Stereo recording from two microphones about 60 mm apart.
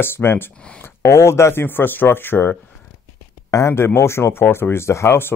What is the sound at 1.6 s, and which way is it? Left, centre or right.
Speech, left.